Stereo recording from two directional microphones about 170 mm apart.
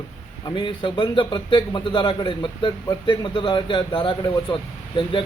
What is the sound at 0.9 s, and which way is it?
Speech, 30° left (ahead or behind).